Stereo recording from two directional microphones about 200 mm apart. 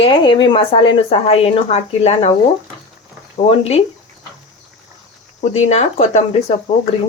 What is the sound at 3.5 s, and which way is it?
Speech, 30° left (ahead or behind).